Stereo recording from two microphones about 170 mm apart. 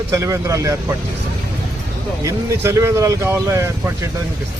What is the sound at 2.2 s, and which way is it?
Speech, 15° right (ahead or behind).